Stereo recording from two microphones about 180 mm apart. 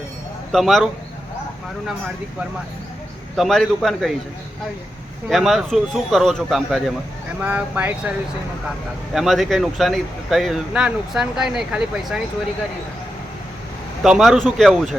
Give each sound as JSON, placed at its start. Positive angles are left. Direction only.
{"t": 0.5, "sound": "speech", "side_deg": 0}
{"t": 3.3, "sound": "speech", "side_deg": 0}
{"t": 5.3, "sound": "speech", "side_deg": 0}
{"t": 9.1, "sound": "speech", "side_deg": 0}
{"t": 14.0, "sound": "speech", "side_deg": 0}